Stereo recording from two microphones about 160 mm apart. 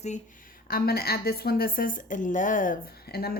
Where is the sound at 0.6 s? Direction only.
70° left (ahead or behind).